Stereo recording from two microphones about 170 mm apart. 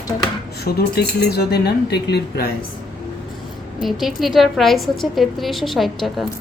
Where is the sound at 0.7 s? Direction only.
65° left (ahead or behind).